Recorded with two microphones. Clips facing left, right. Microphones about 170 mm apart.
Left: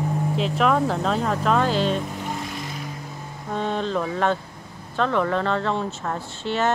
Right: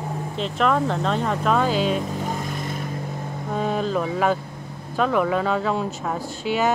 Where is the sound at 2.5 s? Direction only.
50° right (ahead or behind).